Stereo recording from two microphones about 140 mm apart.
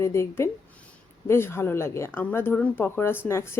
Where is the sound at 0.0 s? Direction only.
20° left (ahead or behind).